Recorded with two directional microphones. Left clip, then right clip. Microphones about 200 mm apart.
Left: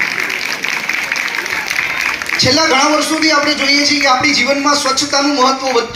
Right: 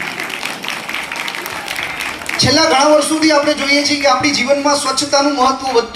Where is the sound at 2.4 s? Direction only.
10° right (ahead or behind).